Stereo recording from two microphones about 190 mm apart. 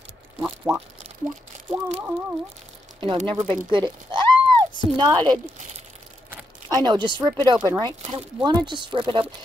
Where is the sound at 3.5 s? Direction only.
25° right (ahead or behind).